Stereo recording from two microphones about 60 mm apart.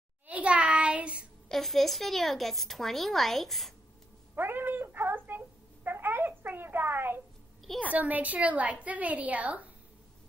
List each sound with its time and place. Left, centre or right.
0.3 s child singing: right
1.5 s speech: centre
4.4 s cat: right
5.9 s a sound: right
7.9 s a woman's voice: right